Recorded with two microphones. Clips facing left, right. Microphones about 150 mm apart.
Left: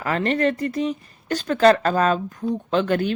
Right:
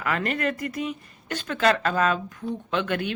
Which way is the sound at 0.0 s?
30° left (ahead or behind).